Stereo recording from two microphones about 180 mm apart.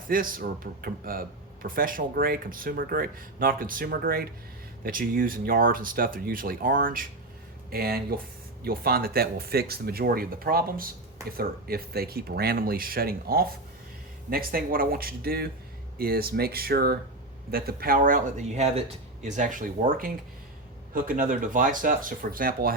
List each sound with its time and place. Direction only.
0.1 s speech: 50° right (ahead or behind)